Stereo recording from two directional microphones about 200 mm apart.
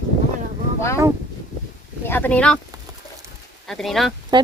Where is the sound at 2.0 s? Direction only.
10° left (ahead or behind).